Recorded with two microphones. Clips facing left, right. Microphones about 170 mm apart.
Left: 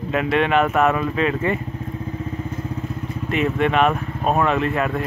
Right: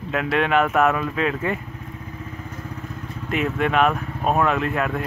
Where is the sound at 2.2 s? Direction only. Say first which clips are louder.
Left 7 dB; 25° left (ahead or behind).